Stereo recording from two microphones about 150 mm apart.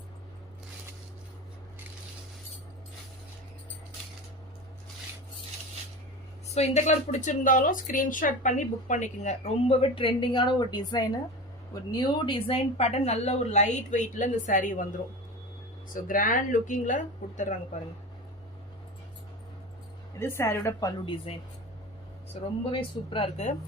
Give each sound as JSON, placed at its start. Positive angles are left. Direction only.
{"t": 6.5, "sound": "a woman's voice", "side_deg": 50}
{"t": 16.0, "sound": "speech", "side_deg": 65}
{"t": 20.1, "sound": "a woman's voice", "side_deg": 15}
{"t": 21.0, "sound": "speech", "side_deg": 35}
{"t": 22.3, "sound": "speech", "side_deg": 40}